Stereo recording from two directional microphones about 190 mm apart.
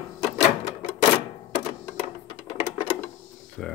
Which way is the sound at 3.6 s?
5° left (ahead or behind).